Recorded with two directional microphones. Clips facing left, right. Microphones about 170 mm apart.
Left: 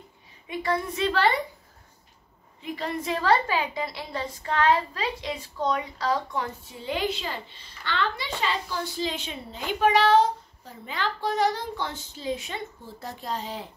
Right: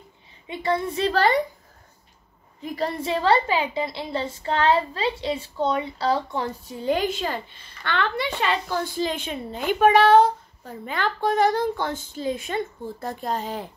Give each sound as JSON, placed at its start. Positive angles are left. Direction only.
{"t": 0.5, "sound": "a woman's voice", "side_deg": -25}
{"t": 2.6, "sound": "a woman's voice", "side_deg": -35}
{"t": 6.8, "sound": "a woman's voice", "side_deg": -45}